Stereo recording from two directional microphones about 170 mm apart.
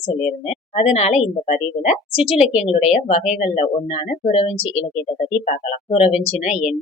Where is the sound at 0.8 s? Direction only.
40° left (ahead or behind).